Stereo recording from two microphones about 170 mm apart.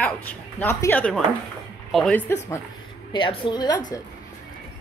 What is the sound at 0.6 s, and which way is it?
Speech, 15° left (ahead or behind).